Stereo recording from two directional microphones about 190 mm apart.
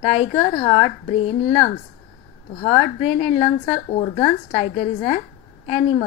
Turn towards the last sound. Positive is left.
turn(degrees=30)  # may be behind; listen again after turning